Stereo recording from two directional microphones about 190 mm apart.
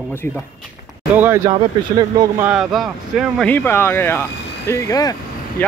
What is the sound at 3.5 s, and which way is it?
Speech, 10° left (ahead or behind).